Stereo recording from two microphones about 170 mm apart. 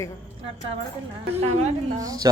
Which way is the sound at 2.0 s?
20° right (ahead or behind).